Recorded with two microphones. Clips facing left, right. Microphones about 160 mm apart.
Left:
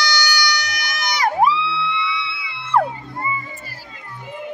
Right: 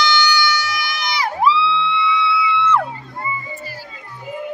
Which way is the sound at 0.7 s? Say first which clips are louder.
Right 2 dB; 45° left (ahead or behind).